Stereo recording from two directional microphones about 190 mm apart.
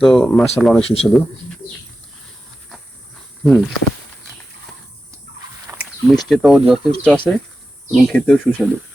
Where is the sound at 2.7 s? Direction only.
Centre (ahead or behind).